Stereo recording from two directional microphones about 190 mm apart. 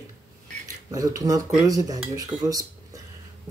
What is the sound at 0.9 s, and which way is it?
Speech, 20° right (ahead or behind).